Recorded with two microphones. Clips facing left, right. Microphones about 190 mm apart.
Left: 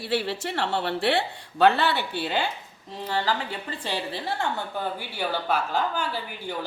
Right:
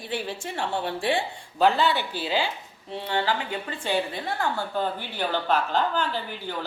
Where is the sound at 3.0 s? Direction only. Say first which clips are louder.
Even; 40° left (ahead or behind).